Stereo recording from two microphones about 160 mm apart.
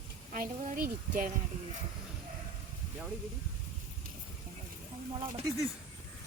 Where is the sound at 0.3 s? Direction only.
60° right (ahead or behind).